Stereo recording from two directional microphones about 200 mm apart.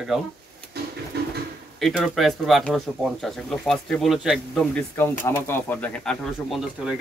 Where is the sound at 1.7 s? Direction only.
Centre (ahead or behind).